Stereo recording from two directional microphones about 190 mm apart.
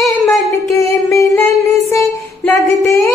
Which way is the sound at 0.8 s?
15° left (ahead or behind).